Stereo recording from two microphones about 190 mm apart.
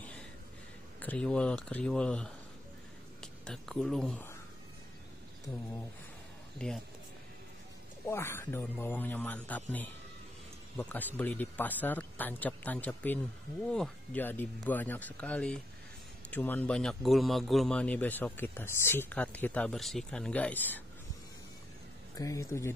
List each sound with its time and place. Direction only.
0.9 s speech: 5° left (ahead or behind)
8.1 s a man's voice: 15° left (ahead or behind)
22.1 s a man's voice: 20° left (ahead or behind)